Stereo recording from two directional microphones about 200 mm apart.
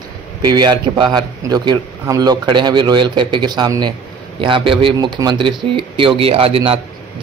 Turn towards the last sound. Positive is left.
turn(degrees=-30)  # may be behind; listen again after turning